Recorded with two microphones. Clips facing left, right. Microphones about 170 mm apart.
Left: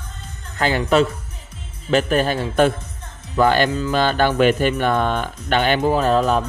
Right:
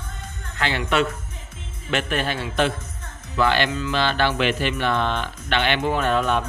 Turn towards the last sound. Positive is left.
turn(degrees=35)  # may be behind; listen again after turning